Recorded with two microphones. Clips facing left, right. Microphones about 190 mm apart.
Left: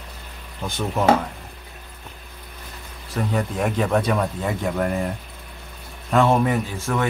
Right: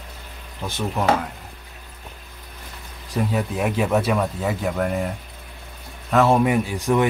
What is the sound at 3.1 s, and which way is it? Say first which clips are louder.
Speech: right 1 dB; 5° right (ahead or behind).